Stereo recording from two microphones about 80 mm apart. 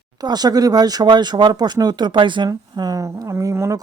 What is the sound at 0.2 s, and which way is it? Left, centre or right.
Speech, right.